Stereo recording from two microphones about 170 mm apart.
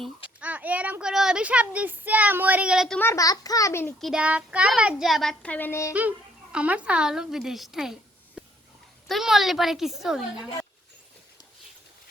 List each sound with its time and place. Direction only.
0.3 s a child's voice: 10° right (ahead or behind)
3.0 s a child's voice: 20° left (ahead or behind)
4.0 s speech: 5° right (ahead or behind); by 5.9 s 15° left (ahead or behind)
5.9 s speech: 10° right (ahead or behind)
9.0 s speech: centre (ahead or behind)